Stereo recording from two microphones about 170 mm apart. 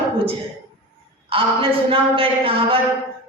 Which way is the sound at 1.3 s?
30° right (ahead or behind).